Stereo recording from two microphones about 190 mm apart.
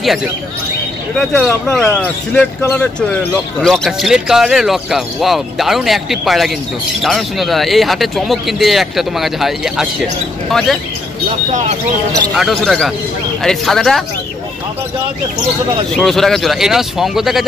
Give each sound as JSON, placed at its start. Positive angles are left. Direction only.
{"t": 0.0, "sound": "speech", "side_deg": 0}
{"t": 12.4, "sound": "speech", "side_deg": 0}
{"t": 15.9, "sound": "speech", "side_deg": 0}